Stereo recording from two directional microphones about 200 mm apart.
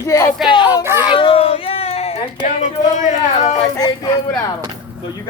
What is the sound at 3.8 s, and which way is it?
Speech, 20° left (ahead or behind).